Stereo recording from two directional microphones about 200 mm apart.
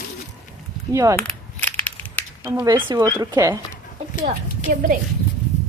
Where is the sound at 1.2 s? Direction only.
10° left (ahead or behind).